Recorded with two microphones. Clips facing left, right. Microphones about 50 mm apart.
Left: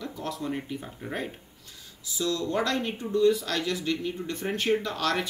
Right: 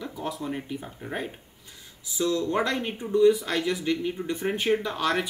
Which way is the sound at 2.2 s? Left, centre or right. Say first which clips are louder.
Right 2 dB; right.